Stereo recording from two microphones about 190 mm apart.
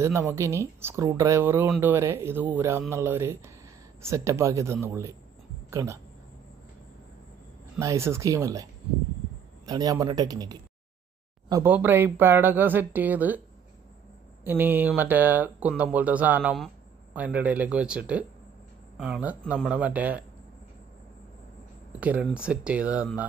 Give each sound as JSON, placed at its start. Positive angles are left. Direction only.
{"t": 0.0, "sound": "speech", "side_deg": -15}
{"t": 7.8, "sound": "speech", "side_deg": -15}
{"t": 9.7, "sound": "a man's voice", "side_deg": -20}
{"t": 14.4, "sound": "speech", "side_deg": -10}
{"t": 22.0, "sound": "speech", "side_deg": -5}